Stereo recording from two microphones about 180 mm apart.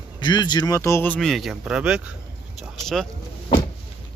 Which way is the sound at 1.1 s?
Centre (ahead or behind).